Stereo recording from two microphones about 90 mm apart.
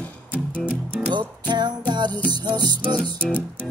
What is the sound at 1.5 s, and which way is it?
Music, 55° right (ahead or behind).